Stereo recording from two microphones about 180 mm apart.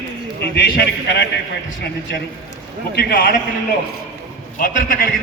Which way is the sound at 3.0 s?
60° left (ahead or behind).